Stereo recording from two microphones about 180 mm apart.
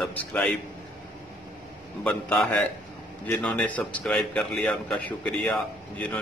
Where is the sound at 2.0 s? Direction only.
10° left (ahead or behind).